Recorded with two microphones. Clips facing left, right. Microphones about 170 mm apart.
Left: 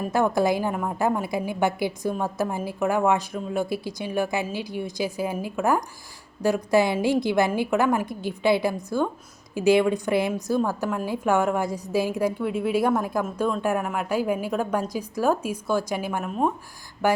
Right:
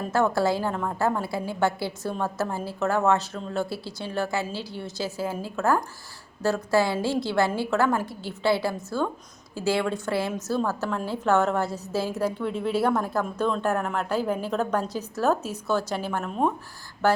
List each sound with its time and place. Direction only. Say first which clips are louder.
0.0 s a woman's voice: left 1 dB; 15° left (ahead or behind)